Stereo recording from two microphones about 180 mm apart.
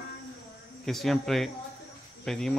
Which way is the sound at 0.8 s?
Centre (ahead or behind).